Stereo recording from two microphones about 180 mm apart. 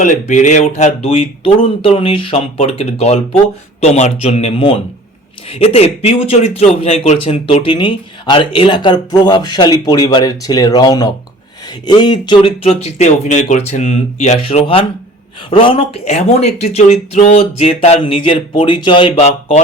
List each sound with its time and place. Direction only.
0.0 s speech: 45° left (ahead or behind)